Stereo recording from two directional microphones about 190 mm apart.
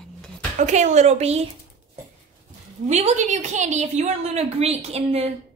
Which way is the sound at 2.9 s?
35° right (ahead or behind).